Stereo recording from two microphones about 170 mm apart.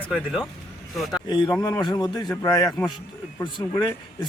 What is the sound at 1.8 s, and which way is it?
Speech, 25° left (ahead or behind).